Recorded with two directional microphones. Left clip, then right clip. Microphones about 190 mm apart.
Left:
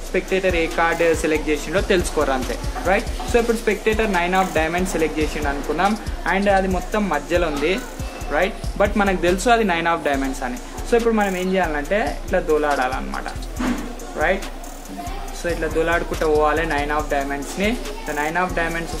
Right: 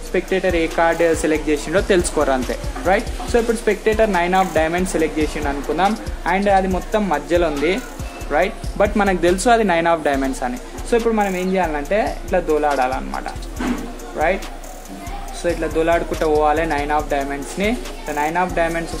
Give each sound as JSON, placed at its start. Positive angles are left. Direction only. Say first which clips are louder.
{"t": 0.1, "sound": "speech", "louder": "right 1 dB", "side_deg": -30}
{"t": 11.1, "sound": "speech", "louder": "right 1 dB", "side_deg": -15}
{"t": 15.4, "sound": "speech", "louder": "right 3 dB", "side_deg": -20}